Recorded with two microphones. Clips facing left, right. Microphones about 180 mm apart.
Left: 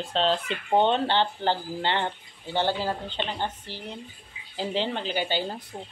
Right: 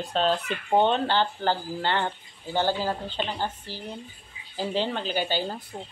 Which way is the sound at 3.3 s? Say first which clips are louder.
Even; 20° left (ahead or behind).